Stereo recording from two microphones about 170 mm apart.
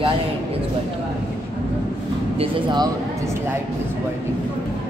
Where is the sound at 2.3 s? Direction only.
25° right (ahead or behind).